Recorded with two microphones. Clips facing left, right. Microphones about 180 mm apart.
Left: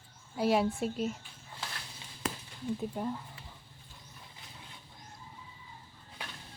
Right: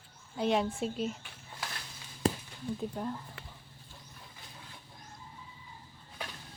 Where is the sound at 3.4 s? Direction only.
70° right (ahead or behind).